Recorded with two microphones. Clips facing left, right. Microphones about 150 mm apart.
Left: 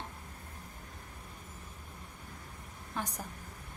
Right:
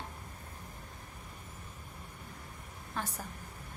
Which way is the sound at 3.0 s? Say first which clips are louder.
Even; 15° left (ahead or behind).